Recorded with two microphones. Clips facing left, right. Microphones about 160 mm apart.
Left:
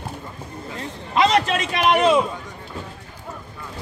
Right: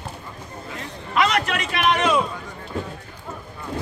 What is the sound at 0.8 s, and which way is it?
A man's voice, 30° left (ahead or behind).